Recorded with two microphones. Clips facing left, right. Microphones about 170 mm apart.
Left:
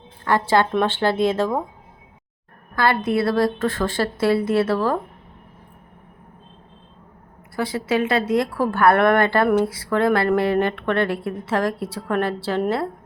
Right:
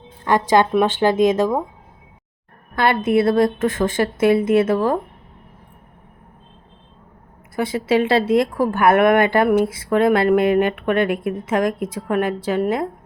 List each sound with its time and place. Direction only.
0.3 s speech: 15° right (ahead or behind)
2.7 s a woman's voice: 20° right (ahead or behind)
7.5 s speech: 25° right (ahead or behind)